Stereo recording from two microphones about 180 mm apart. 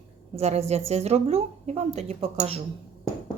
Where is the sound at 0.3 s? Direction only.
35° right (ahead or behind).